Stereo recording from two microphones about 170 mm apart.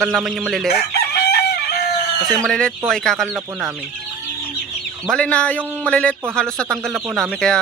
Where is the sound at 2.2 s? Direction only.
5° left (ahead or behind).